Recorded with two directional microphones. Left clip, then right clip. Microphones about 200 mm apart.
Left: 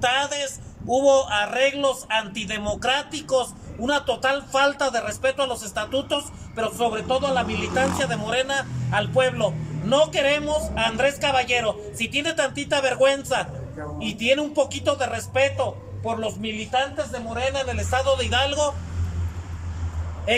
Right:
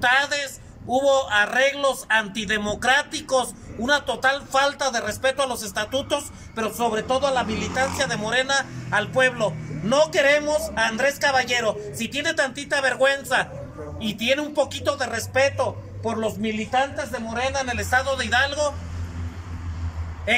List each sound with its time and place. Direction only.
0.0 s a man's voice: 10° left (ahead or behind)
0.9 s a man's voice: 30° left (ahead or behind)
1.2 s speech: 5° left (ahead or behind)